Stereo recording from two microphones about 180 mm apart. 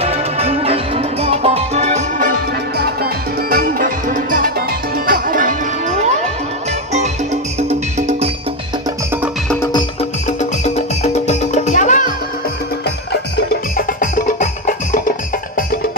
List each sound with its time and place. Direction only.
0.0 s music: 35° right (ahead or behind)
2.8 s music: 60° right (ahead or behind)
10.6 s music: 40° left (ahead or behind)
13.1 s music: 55° left (ahead or behind)